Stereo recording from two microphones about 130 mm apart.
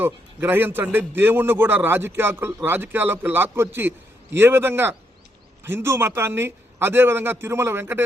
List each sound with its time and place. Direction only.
0.0 s a man's voice: 15° right (ahead or behind)